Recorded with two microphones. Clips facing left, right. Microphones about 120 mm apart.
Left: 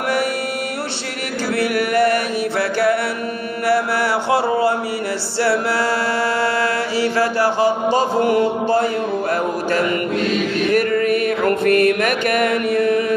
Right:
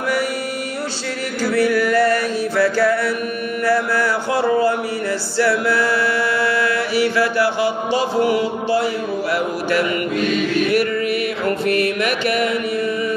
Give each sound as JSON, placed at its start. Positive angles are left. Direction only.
{"t": 1.5, "sound": "music", "side_deg": 60}
{"t": 3.6, "sound": "a sound", "side_deg": 25}
{"t": 5.4, "sound": "music", "side_deg": 35}
{"t": 6.4, "sound": "chant", "side_deg": 40}
{"t": 10.7, "sound": "music", "side_deg": 45}